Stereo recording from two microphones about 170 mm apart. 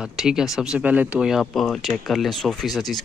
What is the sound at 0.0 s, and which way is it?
Speech, 5° right (ahead or behind).